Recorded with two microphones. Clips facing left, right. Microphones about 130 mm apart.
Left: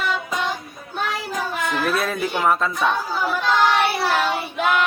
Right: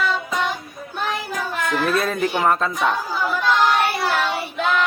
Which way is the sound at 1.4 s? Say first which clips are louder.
Left 2 dB; 25° left (ahead or behind).